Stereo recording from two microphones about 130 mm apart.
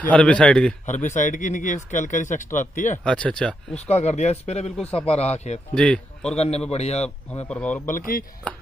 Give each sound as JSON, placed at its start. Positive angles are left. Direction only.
{"t": 0.0, "sound": "a man's voice", "side_deg": 10}
{"t": 0.8, "sound": "speech", "side_deg": 70}
{"t": 3.1, "sound": "a man's voice", "side_deg": 10}
{"t": 3.9, "sound": "speech", "side_deg": 60}
{"t": 5.8, "sound": "speech", "side_deg": 5}
{"t": 6.3, "sound": "a man's voice", "side_deg": 55}
{"t": 7.4, "sound": "a man's voice", "side_deg": 10}
{"t": 7.8, "sound": "speech", "side_deg": 85}